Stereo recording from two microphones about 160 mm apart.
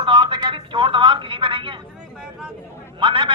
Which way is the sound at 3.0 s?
30° right (ahead or behind).